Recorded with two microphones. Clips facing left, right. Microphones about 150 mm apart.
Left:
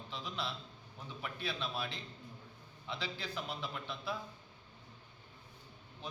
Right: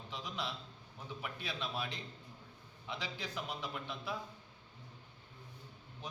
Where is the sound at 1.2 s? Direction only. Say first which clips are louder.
Left 2 dB; 15° right (ahead or behind).